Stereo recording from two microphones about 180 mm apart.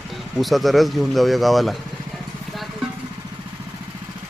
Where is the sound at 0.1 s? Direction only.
Centre (ahead or behind).